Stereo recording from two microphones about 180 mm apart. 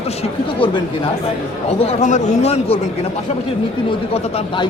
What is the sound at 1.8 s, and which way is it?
Speech, 35° left (ahead or behind).